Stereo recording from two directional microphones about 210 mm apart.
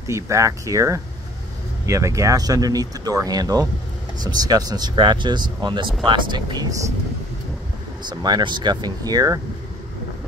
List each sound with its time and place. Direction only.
0.0 s speech: 15° right (ahead or behind)
8.1 s speech: 20° right (ahead or behind)